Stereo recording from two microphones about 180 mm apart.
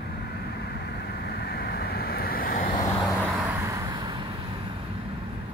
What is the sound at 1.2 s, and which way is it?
Vehicle, 60° left (ahead or behind).